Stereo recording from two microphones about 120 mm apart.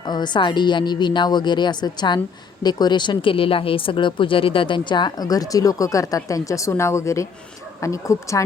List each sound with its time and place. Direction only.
0.0 s a woman's voice: 40° left (ahead or behind)